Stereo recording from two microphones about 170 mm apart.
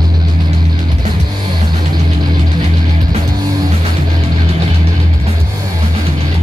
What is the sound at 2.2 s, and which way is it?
Music, 25° right (ahead or behind).